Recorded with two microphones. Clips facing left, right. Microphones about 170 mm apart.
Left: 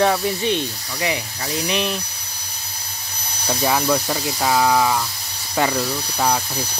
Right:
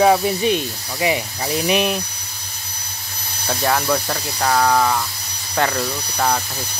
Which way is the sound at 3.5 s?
Centre (ahead or behind).